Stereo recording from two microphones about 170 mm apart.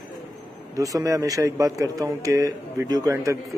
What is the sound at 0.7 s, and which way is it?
Speech, 20° right (ahead or behind).